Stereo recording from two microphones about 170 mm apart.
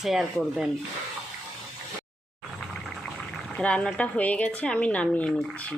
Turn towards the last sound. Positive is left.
turn(degrees=5)  # may be behind; listen again after turning